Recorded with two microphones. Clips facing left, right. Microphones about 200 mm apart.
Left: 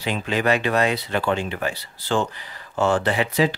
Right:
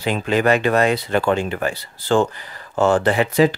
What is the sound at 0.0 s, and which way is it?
Speech, 50° right (ahead or behind).